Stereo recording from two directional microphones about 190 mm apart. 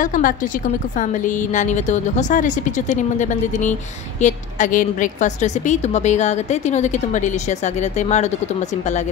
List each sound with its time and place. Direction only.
0.0 s a woman's voice: 45° left (ahead or behind)